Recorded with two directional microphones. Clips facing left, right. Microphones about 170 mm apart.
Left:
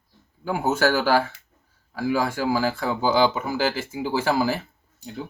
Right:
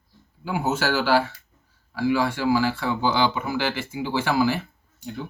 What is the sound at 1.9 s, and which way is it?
Speech, 45° left (ahead or behind).